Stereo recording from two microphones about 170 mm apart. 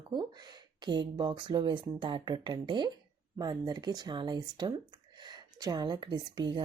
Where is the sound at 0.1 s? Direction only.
25° right (ahead or behind).